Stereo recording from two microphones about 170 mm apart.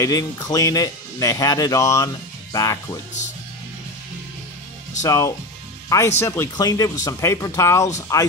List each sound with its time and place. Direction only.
0.0 s speech: 20° left (ahead or behind)
5.0 s speech: 20° left (ahead or behind)